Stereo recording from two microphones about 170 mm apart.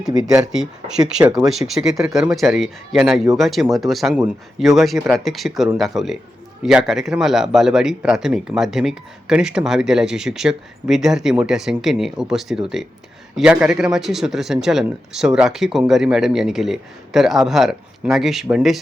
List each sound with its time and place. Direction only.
0.1 s speech: 20° right (ahead or behind)
0.4 s speech: 5° right (ahead or behind)
1.2 s speech: 20° right (ahead or behind)
1.5 s speech: centre (ahead or behind)